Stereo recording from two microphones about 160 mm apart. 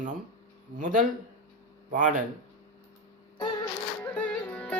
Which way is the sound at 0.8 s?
55° right (ahead or behind).